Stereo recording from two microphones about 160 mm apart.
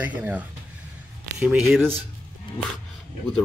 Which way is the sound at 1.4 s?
Centre (ahead or behind).